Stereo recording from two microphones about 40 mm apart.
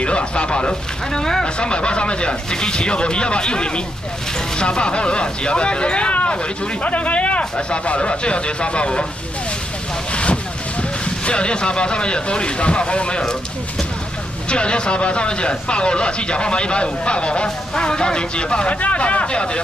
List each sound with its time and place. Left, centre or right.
0.0 s speech: left
10.1 s speech: left
14.5 s speech: left
18.8 s speech: left